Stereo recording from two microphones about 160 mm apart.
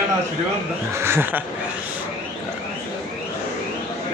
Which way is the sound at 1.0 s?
15° right (ahead or behind).